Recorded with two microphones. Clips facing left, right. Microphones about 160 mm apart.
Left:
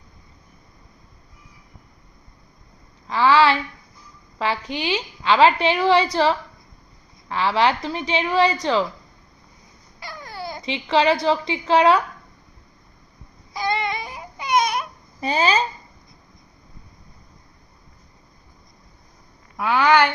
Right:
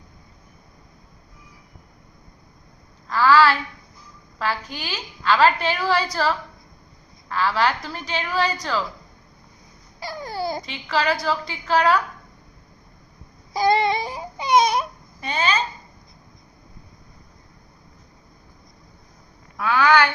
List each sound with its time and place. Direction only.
3.2 s a sound: 25° left (ahead or behind)
4.4 s a woman's voice: 25° left (ahead or behind)
10.0 s babbling: 35° right (ahead or behind)
10.7 s a woman's voice: 25° left (ahead or behind)
13.5 s a sound: 35° right (ahead or behind)
15.2 s speech: 35° left (ahead or behind)
19.5 s a child's voice: 15° left (ahead or behind)